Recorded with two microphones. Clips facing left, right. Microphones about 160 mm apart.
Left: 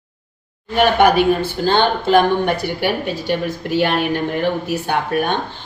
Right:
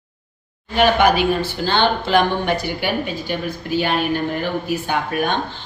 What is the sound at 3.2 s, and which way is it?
A woman's voice, 75° left (ahead or behind).